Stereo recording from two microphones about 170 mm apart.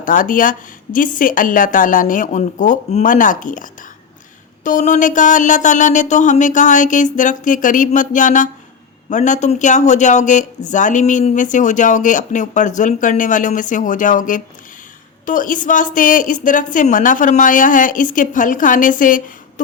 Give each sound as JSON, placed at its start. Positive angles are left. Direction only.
{"t": 0.0, "sound": "a woman's voice", "side_deg": 50}